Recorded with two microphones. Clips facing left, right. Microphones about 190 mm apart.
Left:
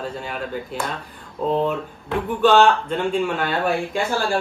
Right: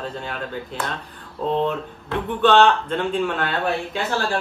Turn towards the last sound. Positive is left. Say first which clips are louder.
# left 2 dB
turn(degrees=10)  # may be behind; listen again after turning